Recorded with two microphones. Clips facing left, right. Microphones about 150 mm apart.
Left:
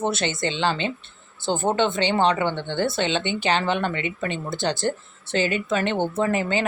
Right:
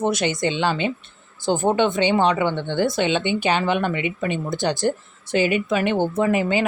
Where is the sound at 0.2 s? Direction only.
15° right (ahead or behind).